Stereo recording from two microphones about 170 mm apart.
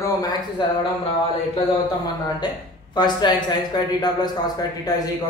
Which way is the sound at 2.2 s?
25° left (ahead or behind).